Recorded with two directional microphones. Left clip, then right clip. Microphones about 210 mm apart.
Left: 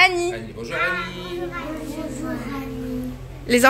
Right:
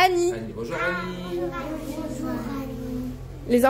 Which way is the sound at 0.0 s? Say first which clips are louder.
Left 3 dB; 35° right (ahead or behind).